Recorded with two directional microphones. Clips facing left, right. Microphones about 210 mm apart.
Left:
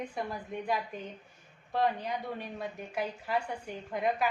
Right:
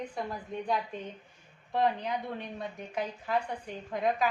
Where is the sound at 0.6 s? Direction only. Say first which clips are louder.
Right 1 dB; 10° left (ahead or behind).